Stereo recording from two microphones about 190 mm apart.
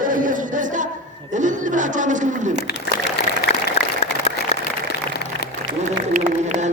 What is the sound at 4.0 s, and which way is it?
Applause, 30° left (ahead or behind).